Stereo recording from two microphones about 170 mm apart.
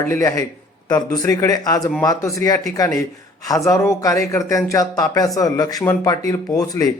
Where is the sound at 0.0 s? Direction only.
15° left (ahead or behind).